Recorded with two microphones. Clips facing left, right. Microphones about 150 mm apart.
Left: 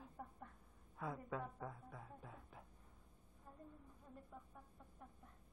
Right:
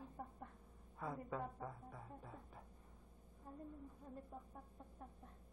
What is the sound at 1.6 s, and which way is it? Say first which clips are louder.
Music: right 1 dB; centre (ahead or behind).